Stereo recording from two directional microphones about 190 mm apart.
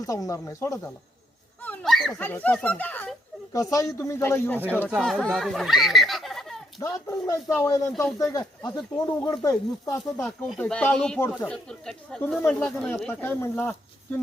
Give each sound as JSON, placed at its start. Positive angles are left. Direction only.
{"t": 0.0, "sound": "speech", "side_deg": 15}
{"t": 1.6, "sound": "a sound", "side_deg": 5}
{"t": 3.5, "sound": "speech", "side_deg": 15}
{"t": 6.8, "sound": "speech", "side_deg": 15}
{"t": 10.2, "sound": "speech", "side_deg": 0}